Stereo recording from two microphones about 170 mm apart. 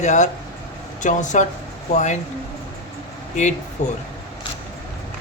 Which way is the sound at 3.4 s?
45° left (ahead or behind).